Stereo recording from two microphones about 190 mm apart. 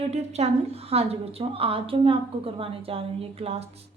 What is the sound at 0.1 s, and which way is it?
A woman's voice, 35° right (ahead or behind).